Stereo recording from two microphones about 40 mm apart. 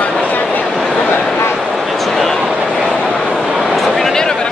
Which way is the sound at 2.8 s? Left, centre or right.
Centre.